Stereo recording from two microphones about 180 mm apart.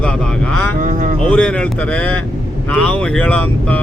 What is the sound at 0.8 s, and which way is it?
Speech, 45° right (ahead or behind).